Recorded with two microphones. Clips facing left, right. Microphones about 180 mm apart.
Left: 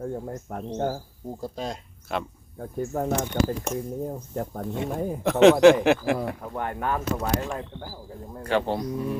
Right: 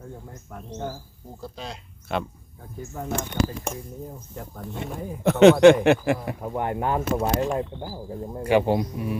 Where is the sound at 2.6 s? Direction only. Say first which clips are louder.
Left 7 dB; 50° left (ahead or behind).